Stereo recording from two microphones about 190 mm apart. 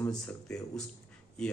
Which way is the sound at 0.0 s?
5° left (ahead or behind).